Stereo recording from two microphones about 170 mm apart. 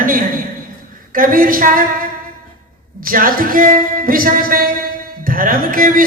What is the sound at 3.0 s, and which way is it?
A man's voice, 55° right (ahead or behind).